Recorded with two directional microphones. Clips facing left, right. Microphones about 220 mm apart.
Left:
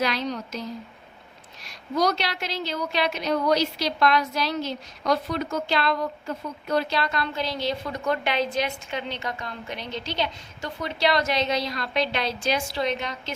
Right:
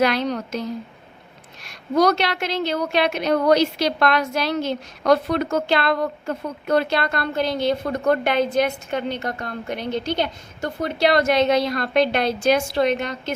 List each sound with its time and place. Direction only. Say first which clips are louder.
0.0 s a woman's voice: right 6 dB; 55° right (ahead or behind)